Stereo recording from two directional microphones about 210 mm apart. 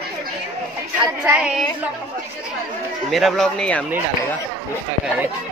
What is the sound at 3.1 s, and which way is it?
Speech, centre (ahead or behind).